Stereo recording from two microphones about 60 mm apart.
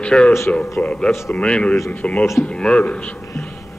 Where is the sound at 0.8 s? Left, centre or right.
Left.